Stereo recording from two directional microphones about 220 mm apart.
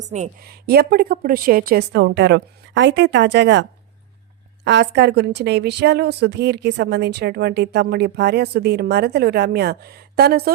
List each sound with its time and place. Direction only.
0.0 s a woman's voice: 35° right (ahead or behind)